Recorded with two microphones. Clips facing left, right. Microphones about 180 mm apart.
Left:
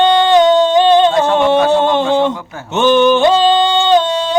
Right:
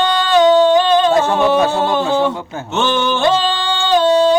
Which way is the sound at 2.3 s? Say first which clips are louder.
Right 1 dB; 25° right (ahead or behind).